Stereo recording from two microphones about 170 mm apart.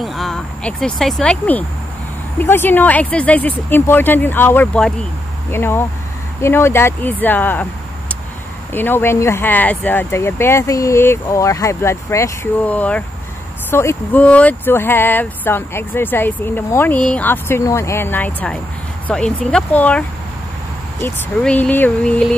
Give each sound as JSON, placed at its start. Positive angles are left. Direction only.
{"t": 0.0, "sound": "speech", "side_deg": 0}
{"t": 8.7, "sound": "speech", "side_deg": 10}
{"t": 21.4, "sound": "speech", "side_deg": 5}